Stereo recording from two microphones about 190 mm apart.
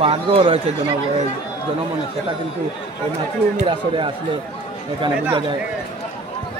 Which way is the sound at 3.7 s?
25° right (ahead or behind).